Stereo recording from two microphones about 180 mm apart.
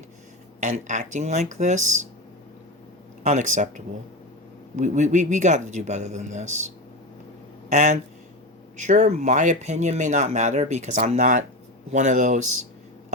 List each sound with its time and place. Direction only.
0.6 s speech: 40° right (ahead or behind)
3.2 s speech: 40° right (ahead or behind)
4.8 s speech: 40° right (ahead or behind)
7.7 s speech: 40° right (ahead or behind)